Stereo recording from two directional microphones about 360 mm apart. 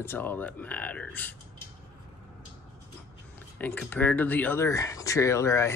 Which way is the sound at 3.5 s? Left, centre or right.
Centre.